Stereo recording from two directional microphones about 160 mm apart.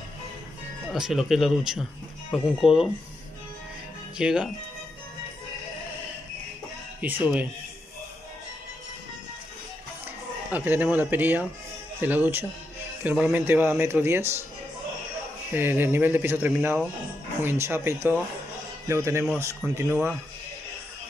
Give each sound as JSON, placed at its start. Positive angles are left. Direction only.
{"t": 0.9, "sound": "speech", "side_deg": -5}
{"t": 4.2, "sound": "speech", "side_deg": -5}
{"t": 7.0, "sound": "speech", "side_deg": -10}
{"t": 10.5, "sound": "speech", "side_deg": -10}
{"t": 15.5, "sound": "speech", "side_deg": -15}